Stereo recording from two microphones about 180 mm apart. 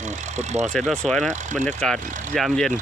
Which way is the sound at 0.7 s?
5° left (ahead or behind).